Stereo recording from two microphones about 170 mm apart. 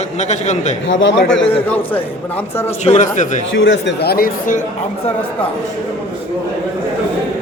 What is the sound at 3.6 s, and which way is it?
Speech, 90° left.